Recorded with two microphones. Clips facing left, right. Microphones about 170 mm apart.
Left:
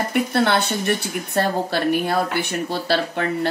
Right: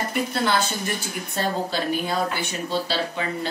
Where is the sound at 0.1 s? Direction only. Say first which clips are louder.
Left 5 dB; 60° left (ahead or behind).